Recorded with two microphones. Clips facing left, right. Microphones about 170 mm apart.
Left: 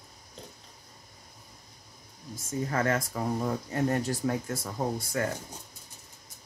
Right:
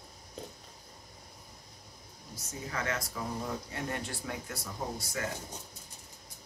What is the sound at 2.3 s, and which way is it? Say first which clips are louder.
Speech: left 9 dB; 50° left (ahead or behind).